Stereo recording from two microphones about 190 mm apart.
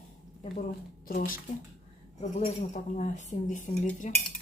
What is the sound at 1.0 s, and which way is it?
Speech, 45° left (ahead or behind).